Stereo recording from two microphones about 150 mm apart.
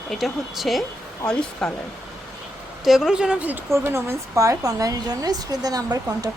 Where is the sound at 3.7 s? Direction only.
20° right (ahead or behind).